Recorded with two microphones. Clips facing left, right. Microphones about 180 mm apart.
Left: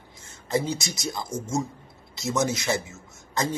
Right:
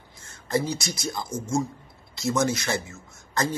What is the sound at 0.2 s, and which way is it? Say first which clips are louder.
A man's voice: even; 15° left (ahead or behind).